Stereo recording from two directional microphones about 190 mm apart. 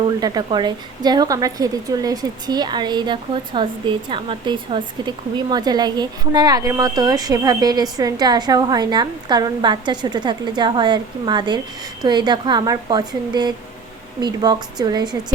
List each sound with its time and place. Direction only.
0.2 s a woman's voice: 20° right (ahead or behind)